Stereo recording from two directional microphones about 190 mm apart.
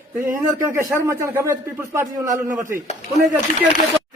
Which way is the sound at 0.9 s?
15° right (ahead or behind).